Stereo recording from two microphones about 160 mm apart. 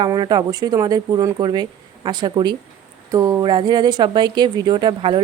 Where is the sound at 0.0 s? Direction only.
25° right (ahead or behind).